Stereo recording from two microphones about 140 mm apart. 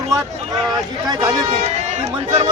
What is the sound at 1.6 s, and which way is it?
Run, 55° right (ahead or behind).